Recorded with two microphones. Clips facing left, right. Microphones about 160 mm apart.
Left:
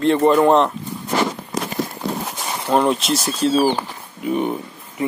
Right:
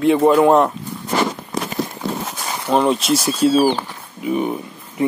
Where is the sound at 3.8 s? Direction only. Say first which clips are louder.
Even; centre (ahead or behind).